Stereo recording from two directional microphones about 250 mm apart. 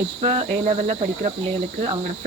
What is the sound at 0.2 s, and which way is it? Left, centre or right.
Speech, right.